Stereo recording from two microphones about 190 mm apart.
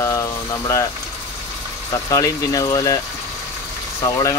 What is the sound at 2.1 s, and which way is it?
Speech, 15° left (ahead or behind).